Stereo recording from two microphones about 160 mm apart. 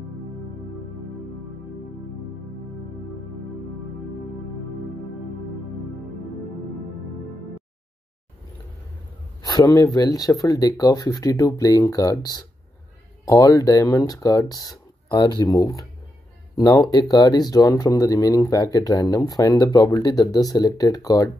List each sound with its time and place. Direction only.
9.9 s speech: 25° left (ahead or behind)